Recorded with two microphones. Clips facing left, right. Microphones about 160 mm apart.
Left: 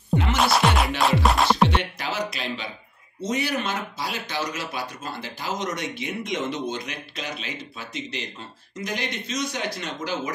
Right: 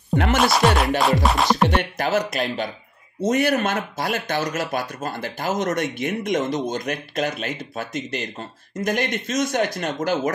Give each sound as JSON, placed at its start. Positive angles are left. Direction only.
{"t": 0.4, "sound": "music", "side_deg": 0}
{"t": 1.7, "sound": "speech", "side_deg": -50}